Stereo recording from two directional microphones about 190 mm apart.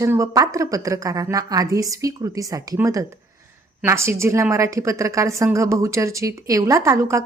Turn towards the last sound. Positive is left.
turn(degrees=-15)  # may be behind; listen again after turning